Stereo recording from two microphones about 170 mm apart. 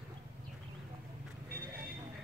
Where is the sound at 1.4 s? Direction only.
60° right (ahead or behind).